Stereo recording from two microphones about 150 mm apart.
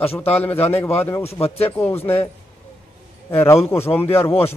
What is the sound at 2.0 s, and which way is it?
Speech, 15° left (ahead or behind).